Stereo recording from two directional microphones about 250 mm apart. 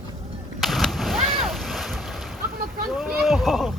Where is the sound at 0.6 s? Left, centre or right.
Centre.